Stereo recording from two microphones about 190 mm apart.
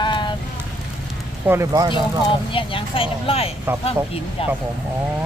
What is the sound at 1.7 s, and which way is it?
Speech, 20° right (ahead or behind).